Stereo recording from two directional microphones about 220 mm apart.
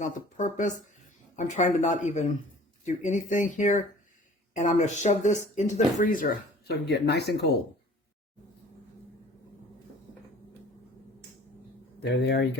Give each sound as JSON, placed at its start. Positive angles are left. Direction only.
{"t": 0.0, "sound": "speech", "side_deg": 35}
{"t": 6.7, "sound": "speech", "side_deg": 50}
{"t": 12.0, "sound": "speech", "side_deg": 50}